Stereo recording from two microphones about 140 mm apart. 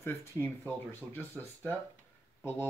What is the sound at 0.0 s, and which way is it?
Speech, 15° left (ahead or behind).